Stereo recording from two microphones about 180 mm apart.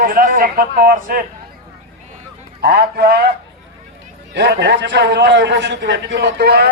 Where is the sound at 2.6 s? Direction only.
60° right (ahead or behind).